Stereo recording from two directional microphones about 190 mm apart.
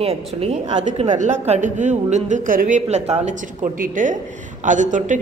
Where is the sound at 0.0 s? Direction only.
30° right (ahead or behind).